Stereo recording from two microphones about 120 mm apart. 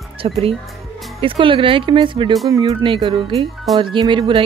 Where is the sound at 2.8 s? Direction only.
45° right (ahead or behind).